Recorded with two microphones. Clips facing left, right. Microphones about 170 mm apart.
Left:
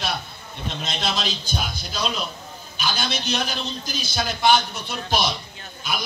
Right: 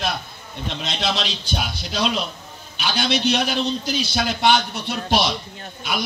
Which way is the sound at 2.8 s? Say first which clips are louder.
Right 5 dB; 70° right (ahead or behind).